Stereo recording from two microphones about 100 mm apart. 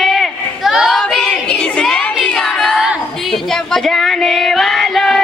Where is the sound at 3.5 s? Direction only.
5° left (ahead or behind).